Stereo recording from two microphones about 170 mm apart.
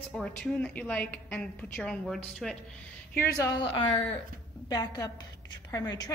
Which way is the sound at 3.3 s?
25° left (ahead or behind).